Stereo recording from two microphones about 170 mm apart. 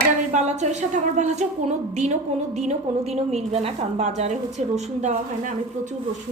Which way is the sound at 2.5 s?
40° right (ahead or behind).